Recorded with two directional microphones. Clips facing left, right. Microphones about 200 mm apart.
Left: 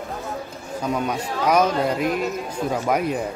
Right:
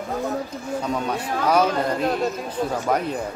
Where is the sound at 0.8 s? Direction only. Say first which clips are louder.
Left 4 dB; 10° left (ahead or behind).